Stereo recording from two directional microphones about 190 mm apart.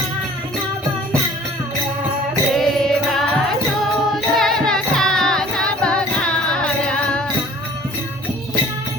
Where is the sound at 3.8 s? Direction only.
Centre (ahead or behind).